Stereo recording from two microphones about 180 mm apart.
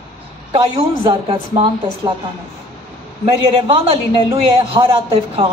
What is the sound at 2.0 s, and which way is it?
Speech, 20° right (ahead or behind).